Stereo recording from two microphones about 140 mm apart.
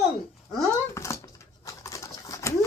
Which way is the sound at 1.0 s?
20° left (ahead or behind).